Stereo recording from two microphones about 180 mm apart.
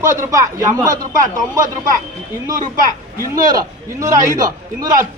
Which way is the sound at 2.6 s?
50° right (ahead or behind).